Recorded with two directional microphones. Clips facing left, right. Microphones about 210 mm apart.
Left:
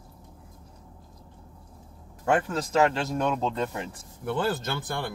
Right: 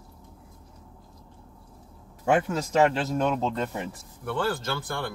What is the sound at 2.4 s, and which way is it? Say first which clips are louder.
Speech: right 1 dB; 5° right (ahead or behind).